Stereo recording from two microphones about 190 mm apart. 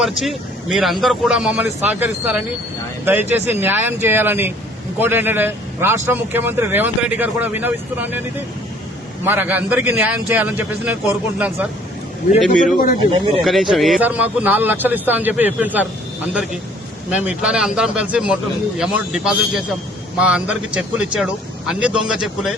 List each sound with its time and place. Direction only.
0.2 s a man's voice: centre (ahead or behind)
9.2 s a man's voice: 10° right (ahead or behind)
12.7 s speech: 45° left (ahead or behind)
13.4 s a man's voice: centre (ahead or behind)
17.1 s a man's voice: 5° right (ahead or behind)